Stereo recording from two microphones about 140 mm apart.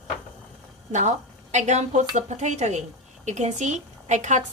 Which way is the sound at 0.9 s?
55° right (ahead or behind).